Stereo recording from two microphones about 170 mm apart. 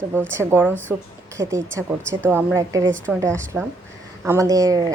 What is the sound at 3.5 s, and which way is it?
Speech, 5° right (ahead or behind).